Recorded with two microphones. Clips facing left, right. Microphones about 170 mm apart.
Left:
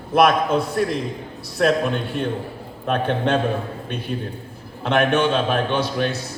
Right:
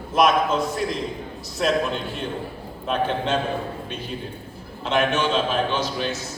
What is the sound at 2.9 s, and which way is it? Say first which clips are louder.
Speech: left 3 dB; 55° left (ahead or behind).